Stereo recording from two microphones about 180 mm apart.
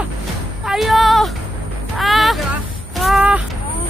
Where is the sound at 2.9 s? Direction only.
5° right (ahead or behind).